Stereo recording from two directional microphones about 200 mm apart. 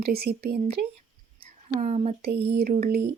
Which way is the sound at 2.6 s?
50° right (ahead or behind).